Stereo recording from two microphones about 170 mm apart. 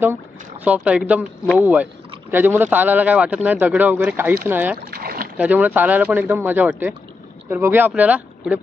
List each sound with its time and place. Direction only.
0.7 s speech: 5° right (ahead or behind)
4.9 s boat: 60° right (ahead or behind)
5.4 s speech: 10° right (ahead or behind)